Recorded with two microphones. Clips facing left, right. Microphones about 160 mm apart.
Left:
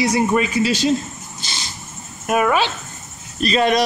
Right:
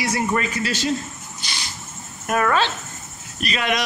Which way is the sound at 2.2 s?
15° left (ahead or behind).